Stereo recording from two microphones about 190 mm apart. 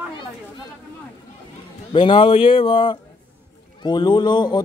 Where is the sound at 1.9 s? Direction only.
25° left (ahead or behind).